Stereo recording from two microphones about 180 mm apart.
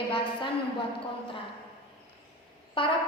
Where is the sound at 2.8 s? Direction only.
25° left (ahead or behind).